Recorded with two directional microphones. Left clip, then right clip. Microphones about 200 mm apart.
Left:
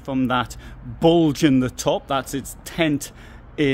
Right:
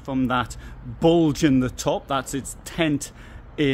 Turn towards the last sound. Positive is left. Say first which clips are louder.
# left 2 dB
turn(degrees=10)  # may be behind; listen again after turning